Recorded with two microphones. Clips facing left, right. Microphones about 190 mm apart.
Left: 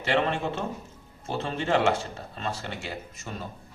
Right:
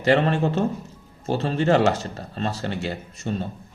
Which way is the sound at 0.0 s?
40° right (ahead or behind).